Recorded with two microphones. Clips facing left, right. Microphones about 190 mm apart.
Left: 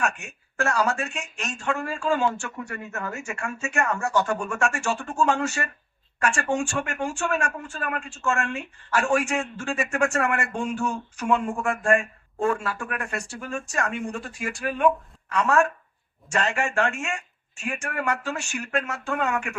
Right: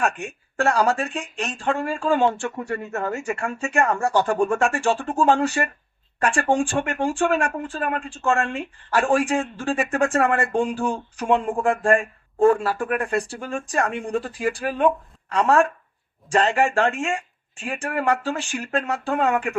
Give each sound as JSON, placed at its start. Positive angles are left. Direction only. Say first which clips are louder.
{"t": 0.0, "sound": "speech", "louder": "right 4 dB", "side_deg": -30}